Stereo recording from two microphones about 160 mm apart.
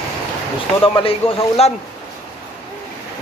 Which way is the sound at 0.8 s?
35° left (ahead or behind).